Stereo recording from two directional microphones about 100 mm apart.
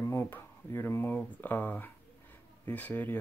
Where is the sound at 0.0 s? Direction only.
25° left (ahead or behind).